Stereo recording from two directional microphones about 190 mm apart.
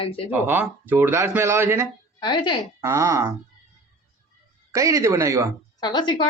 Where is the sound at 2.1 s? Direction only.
25° left (ahead or behind).